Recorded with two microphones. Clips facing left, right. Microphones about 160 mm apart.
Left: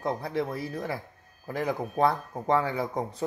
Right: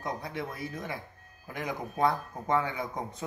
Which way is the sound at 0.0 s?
35° left (ahead or behind).